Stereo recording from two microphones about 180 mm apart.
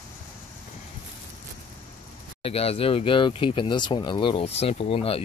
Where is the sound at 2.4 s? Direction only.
35° left (ahead or behind).